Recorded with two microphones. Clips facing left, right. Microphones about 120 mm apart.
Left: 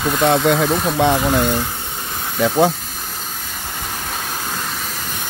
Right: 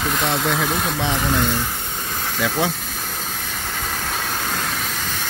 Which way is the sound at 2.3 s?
30° left (ahead or behind).